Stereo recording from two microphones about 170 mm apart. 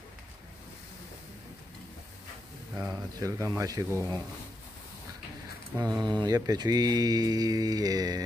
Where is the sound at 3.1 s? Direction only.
20° right (ahead or behind).